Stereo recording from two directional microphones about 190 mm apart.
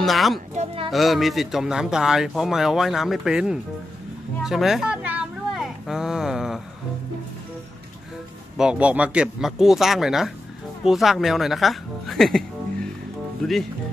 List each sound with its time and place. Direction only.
0.0 s speech: centre (ahead or behind)
0.6 s speech: 30° right (ahead or behind)
0.9 s speech: centre (ahead or behind)
4.4 s a sound: centre (ahead or behind)
8.5 s speech: 5° right (ahead or behind)